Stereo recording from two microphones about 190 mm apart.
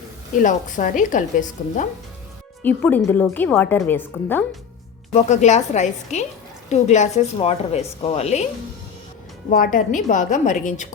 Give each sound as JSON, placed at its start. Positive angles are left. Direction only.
{"t": 0.3, "sound": "a woman's voice", "side_deg": 40}
{"t": 2.6, "sound": "a woman's voice", "side_deg": 10}
{"t": 5.1, "sound": "a woman's voice", "side_deg": 40}
{"t": 9.5, "sound": "a woman's voice", "side_deg": 45}